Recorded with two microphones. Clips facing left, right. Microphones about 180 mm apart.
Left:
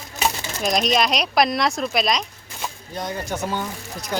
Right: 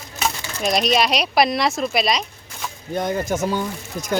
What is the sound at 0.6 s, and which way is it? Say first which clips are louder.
Speech: right 1 dB; centre (ahead or behind).